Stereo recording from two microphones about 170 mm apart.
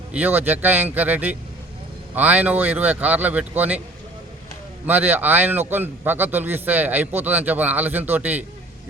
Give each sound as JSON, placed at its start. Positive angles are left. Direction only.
{"t": 0.1, "sound": "a man's voice", "side_deg": -10}
{"t": 4.9, "sound": "a man's voice", "side_deg": -10}